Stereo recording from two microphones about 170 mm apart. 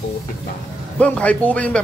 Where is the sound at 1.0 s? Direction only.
5° left (ahead or behind).